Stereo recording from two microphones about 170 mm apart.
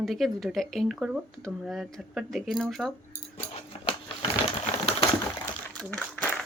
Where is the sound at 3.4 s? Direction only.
35° left (ahead or behind).